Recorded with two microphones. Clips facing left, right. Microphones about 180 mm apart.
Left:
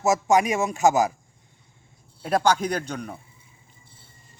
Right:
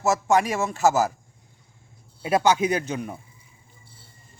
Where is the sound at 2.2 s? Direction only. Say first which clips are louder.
Right 1 dB; 5° right (ahead or behind).